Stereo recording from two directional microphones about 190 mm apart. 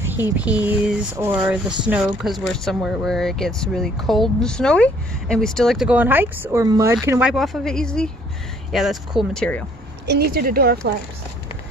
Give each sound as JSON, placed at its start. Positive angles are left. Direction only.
{"t": 0.5, "sound": "a sound", "side_deg": -10}
{"t": 1.9, "sound": "speech", "side_deg": -5}
{"t": 10.0, "sound": "a woman's voice", "side_deg": -55}